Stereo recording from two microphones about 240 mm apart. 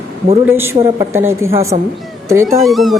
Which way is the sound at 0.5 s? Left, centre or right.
Centre.